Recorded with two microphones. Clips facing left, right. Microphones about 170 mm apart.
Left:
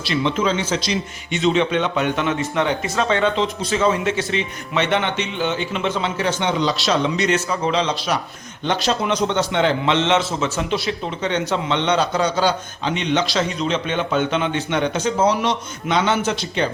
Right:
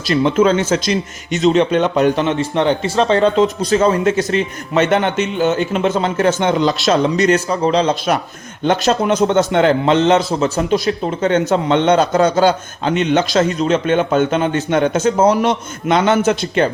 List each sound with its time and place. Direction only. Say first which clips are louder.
0.0 s a man's voice: right 7 dB; 45° right (ahead or behind)